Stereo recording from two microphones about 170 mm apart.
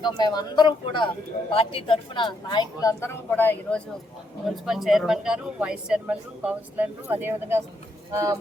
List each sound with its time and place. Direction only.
0.2 s a man's voice: 25° left (ahead or behind); by 8.4 s 15° right (ahead or behind)